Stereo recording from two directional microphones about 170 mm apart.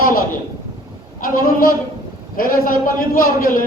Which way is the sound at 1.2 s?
55° left (ahead or behind).